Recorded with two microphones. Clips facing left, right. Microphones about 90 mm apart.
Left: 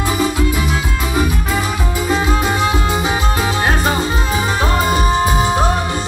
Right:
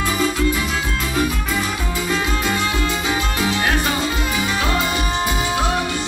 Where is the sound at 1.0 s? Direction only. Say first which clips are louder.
Left 3 dB; 15° left (ahead or behind).